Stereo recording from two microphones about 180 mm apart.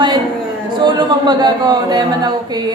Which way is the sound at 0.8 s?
25° right (ahead or behind).